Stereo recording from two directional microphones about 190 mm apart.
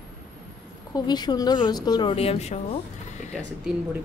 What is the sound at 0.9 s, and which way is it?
A woman's voice, 20° left (ahead or behind).